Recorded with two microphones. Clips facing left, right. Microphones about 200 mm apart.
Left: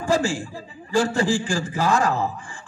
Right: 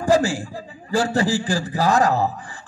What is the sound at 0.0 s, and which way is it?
A man's voice, 35° right (ahead or behind).